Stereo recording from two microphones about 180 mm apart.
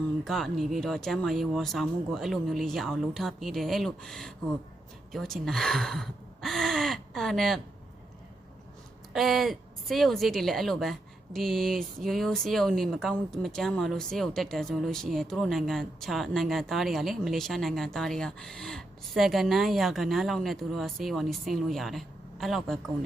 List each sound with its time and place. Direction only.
0.3 s speech: centre (ahead or behind)
9.1 s speech: centre (ahead or behind)